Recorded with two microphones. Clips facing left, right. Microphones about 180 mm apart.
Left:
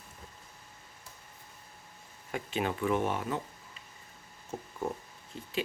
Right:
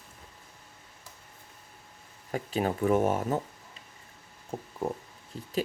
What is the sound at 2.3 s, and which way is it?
Speech, 35° right (ahead or behind).